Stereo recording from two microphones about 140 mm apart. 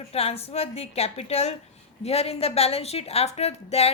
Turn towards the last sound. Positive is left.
turn(degrees=50)  # may be behind; listen again after turning